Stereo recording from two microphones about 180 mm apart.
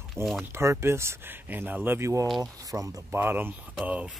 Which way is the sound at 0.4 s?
15° right (ahead or behind).